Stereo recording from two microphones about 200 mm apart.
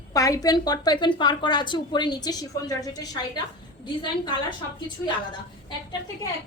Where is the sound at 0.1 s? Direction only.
15° left (ahead or behind).